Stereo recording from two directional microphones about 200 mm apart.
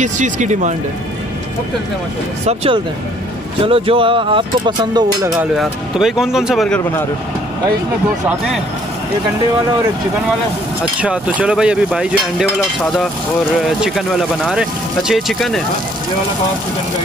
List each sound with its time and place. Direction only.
0.0 s speech: 35° right (ahead or behind)
2.4 s speech: 30° right (ahead or behind)
5.3 s speech: centre (ahead or behind)
11.0 s speech: 5° right (ahead or behind)
13.6 s speech: centre (ahead or behind)